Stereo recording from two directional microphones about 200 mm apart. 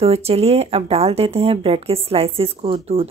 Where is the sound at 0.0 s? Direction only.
30° right (ahead or behind).